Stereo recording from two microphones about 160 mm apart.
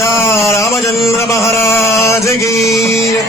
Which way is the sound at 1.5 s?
20° left (ahead or behind).